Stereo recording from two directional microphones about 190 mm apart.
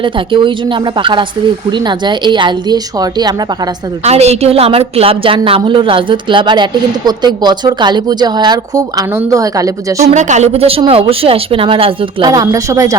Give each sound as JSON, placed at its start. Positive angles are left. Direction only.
{"t": 0.0, "sound": "a woman's voice", "side_deg": -25}
{"t": 4.0, "sound": "a woman's voice", "side_deg": -35}
{"t": 10.0, "sound": "a woman's voice", "side_deg": -35}